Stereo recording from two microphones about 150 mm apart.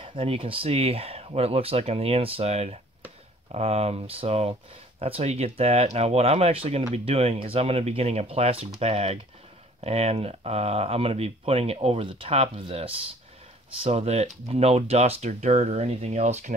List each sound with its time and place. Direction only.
0.0 s speech: 35° right (ahead or behind)